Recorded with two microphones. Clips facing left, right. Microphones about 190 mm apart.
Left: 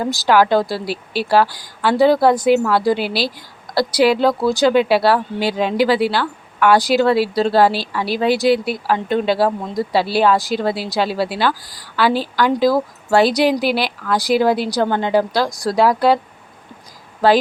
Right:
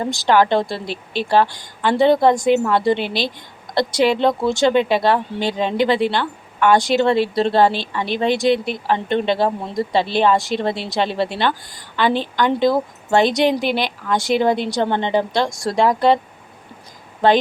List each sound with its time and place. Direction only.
0.1 s speech: 5° left (ahead or behind)
14.8 s a woman's voice: 20° right (ahead or behind)
15.0 s a woman's voice: 5° left (ahead or behind)